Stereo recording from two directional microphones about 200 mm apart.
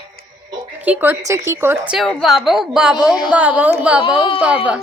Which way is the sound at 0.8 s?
10° right (ahead or behind).